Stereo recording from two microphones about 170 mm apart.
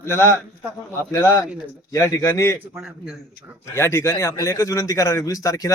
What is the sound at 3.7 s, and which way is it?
Speech, 15° left (ahead or behind).